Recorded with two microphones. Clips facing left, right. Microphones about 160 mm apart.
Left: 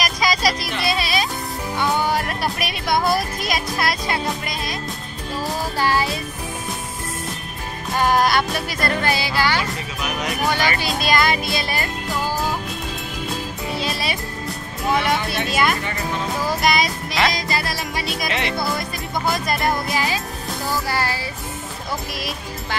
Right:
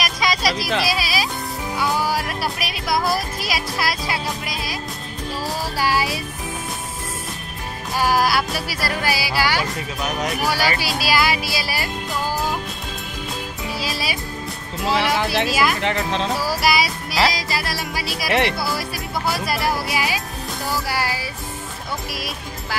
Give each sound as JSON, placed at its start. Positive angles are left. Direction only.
{"t": 0.0, "sound": "music", "side_deg": 0}
{"t": 1.8, "sound": "speech", "side_deg": -5}
{"t": 5.8, "sound": "music", "side_deg": -10}
{"t": 7.9, "sound": "music", "side_deg": -5}
{"t": 13.7, "sound": "music", "side_deg": 0}
{"t": 15.4, "sound": "music", "side_deg": 0}
{"t": 15.8, "sound": "speech", "side_deg": -90}
{"t": 16.3, "sound": "music", "side_deg": -5}